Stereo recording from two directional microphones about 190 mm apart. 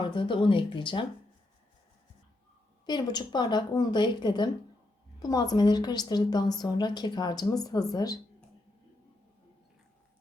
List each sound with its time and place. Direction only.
0.0 s a woman's voice: 25° left (ahead or behind)
2.8 s a woman's voice: 20° left (ahead or behind)